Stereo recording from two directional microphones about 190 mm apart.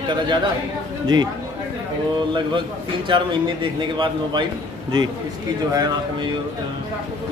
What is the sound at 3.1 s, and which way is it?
Speech, 25° right (ahead or behind).